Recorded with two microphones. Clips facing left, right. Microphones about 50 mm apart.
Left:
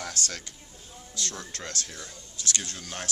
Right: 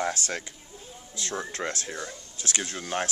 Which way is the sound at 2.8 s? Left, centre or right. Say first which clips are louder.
Right 8 dB; right.